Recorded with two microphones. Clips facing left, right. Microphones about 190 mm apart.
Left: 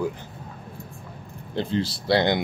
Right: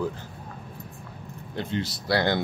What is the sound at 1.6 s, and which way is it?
Speech, 30° left (ahead or behind).